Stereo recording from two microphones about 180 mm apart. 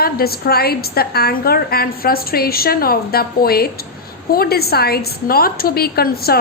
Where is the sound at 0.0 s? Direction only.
60° left (ahead or behind).